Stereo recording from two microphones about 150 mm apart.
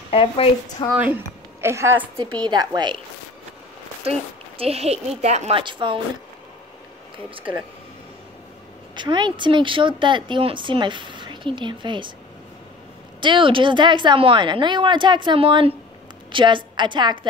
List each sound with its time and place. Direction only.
0.1 s a woman's voice: 40° left (ahead or behind)
1.6 s a woman's voice: 15° right (ahead or behind)
2.1 s a woman's voice: 30° right (ahead or behind)
4.6 s a woman's voice: 45° right (ahead or behind)
7.2 s speech: 35° right (ahead or behind)
8.9 s speech: 30° right (ahead or behind)
13.2 s a woman's voice: 35° right (ahead or behind)